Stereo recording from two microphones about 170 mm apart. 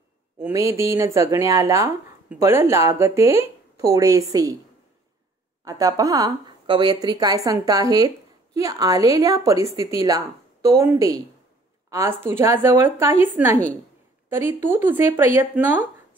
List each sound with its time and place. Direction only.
0.4 s speech: 15° right (ahead or behind)
5.6 s a woman's voice: 20° right (ahead or behind)